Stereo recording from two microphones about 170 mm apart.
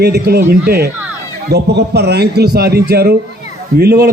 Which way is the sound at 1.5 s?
75° right (ahead or behind).